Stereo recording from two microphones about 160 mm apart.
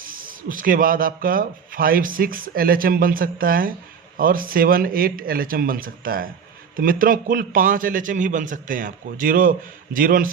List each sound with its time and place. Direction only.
0.0 s speech: 60° right (ahead or behind)